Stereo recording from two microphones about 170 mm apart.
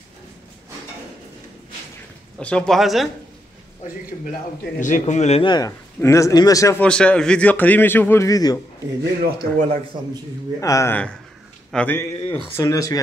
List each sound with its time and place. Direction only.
2.3 s speech: 5° left (ahead or behind)
4.7 s speech: 50° left (ahead or behind)
5.5 s a man's voice: 20° left (ahead or behind)
9.2 s speech: 60° right (ahead or behind)
10.6 s a man's voice: 20° left (ahead or behind)